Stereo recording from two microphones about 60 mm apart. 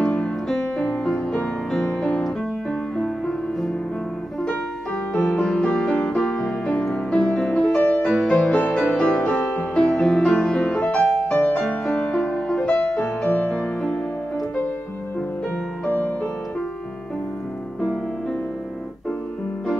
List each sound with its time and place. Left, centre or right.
0.0 s music: centre
3.0 s music: centre
5.2 s music: left
7.7 s music: left